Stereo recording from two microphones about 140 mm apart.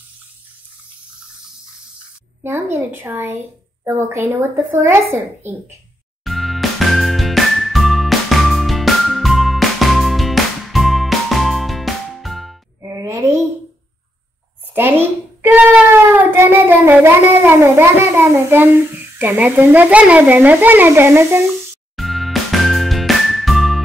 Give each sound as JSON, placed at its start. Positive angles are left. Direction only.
{"t": 2.4, "sound": "speech", "side_deg": -15}
{"t": 6.2, "sound": "music", "side_deg": 0}
{"t": 12.8, "sound": "a sound", "side_deg": -20}
{"t": 14.7, "sound": "a sound", "side_deg": -15}
{"t": 19.1, "sound": "speech", "side_deg": -15}
{"t": 21.9, "sound": "music", "side_deg": 0}